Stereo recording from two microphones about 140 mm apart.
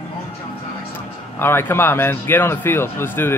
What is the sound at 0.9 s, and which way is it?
A man's voice, 15° left (ahead or behind).